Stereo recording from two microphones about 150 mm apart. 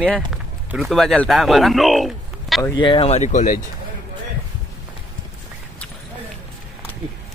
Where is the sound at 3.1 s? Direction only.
55° left (ahead or behind).